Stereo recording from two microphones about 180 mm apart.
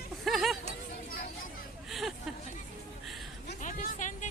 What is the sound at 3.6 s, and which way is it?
Vehicle, 45° left (ahead or behind).